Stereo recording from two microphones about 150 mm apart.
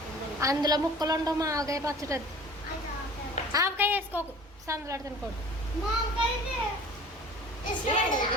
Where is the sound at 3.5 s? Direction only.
15° right (ahead or behind).